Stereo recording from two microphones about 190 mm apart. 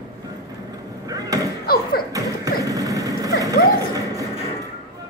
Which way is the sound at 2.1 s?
20° right (ahead or behind).